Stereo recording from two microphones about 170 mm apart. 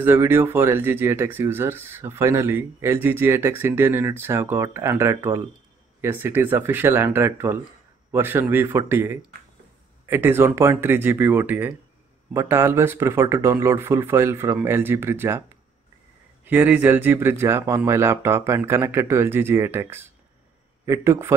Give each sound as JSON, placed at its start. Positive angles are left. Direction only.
{"t": 0.0, "sound": "speech", "side_deg": -15}
{"t": 16.4, "sound": "speech", "side_deg": -10}